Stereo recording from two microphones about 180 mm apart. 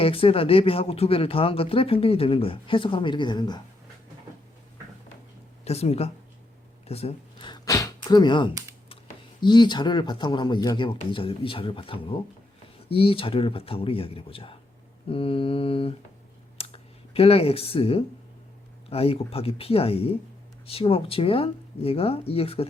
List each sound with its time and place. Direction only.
0.0 s speech: 30° left (ahead or behind)
5.6 s speech: 35° left (ahead or behind)
16.6 s a sound: 35° left (ahead or behind)
18.9 s speech: 35° left (ahead or behind)